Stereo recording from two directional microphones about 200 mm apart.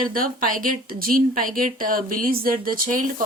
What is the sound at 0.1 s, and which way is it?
Speech, 45° right (ahead or behind).